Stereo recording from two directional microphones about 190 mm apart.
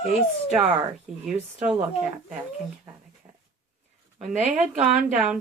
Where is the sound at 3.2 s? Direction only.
20° right (ahead or behind).